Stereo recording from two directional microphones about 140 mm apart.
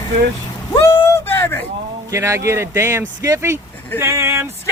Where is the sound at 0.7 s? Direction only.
20° left (ahead or behind).